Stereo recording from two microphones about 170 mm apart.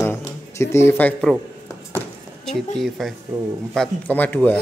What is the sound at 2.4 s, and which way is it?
Speech, centre (ahead or behind).